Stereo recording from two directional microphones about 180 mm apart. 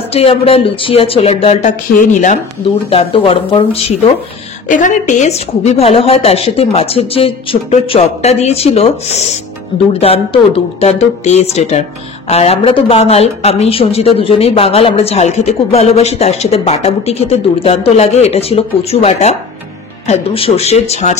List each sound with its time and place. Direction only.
0.1 s a woman's voice: 30° left (ahead or behind)
2.9 s a woman's voice: 30° left (ahead or behind)
4.6 s a woman's voice: 45° left (ahead or behind)